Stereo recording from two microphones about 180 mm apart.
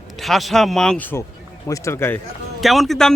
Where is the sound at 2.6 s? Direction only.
Centre (ahead or behind).